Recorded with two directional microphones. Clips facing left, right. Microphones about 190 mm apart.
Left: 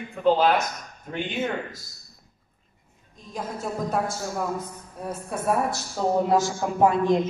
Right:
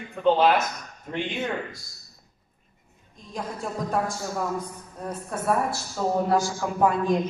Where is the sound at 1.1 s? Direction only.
Centre (ahead or behind).